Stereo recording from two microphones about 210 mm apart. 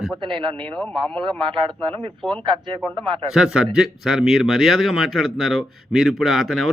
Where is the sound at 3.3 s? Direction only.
5° right (ahead or behind).